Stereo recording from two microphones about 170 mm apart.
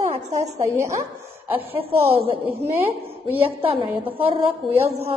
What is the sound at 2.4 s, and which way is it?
Speech, 15° right (ahead or behind).